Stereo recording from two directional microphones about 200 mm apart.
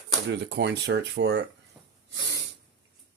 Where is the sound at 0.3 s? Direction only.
60° right (ahead or behind).